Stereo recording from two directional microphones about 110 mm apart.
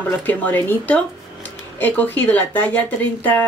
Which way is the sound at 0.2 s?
15° left (ahead or behind).